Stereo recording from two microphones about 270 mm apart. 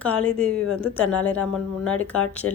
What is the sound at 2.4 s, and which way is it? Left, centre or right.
Speech, right.